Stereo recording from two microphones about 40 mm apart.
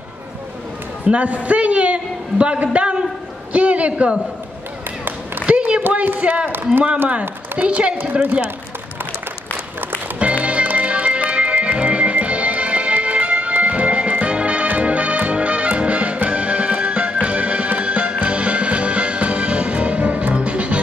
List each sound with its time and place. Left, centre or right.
1.0 s a woman's voice: right
6.1 s a woman's voice: right
8.0 s a woman's voice: right
10.1 s music: right